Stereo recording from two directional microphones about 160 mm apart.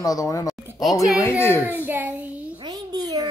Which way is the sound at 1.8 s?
10° right (ahead or behind).